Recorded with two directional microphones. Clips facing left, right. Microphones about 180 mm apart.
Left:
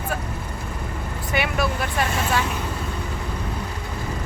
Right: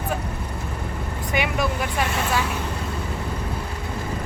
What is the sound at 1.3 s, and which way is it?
Vehicle, 15° right (ahead or behind).